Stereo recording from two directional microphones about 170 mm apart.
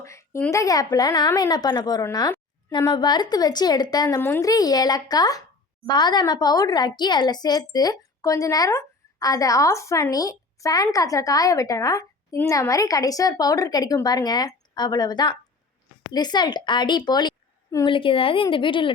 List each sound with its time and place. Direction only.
0.0 s a woman's voice: 15° left (ahead or behind)